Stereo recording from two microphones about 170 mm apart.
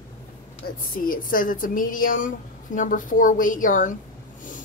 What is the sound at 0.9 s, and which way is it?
A woman's voice, 55° left (ahead or behind).